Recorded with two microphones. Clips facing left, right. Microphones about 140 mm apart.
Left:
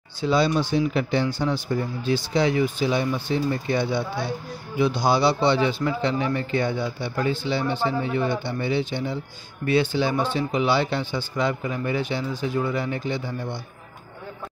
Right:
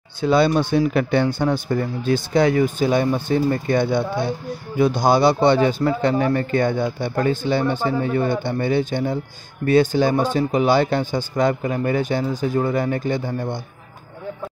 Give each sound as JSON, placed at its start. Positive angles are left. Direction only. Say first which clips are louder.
{"t": 0.2, "sound": "a man's voice", "louder": "right 4 dB", "side_deg": -55}